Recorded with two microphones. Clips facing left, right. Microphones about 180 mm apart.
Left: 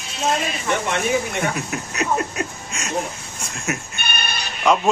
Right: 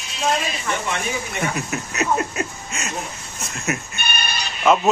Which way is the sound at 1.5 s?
Centre (ahead or behind).